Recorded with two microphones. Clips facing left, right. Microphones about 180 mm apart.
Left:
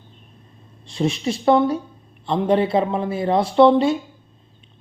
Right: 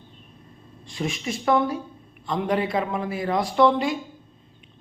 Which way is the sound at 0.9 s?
30° left (ahead or behind).